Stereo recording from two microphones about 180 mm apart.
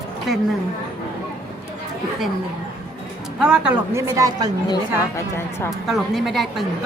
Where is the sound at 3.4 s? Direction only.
5° right (ahead or behind).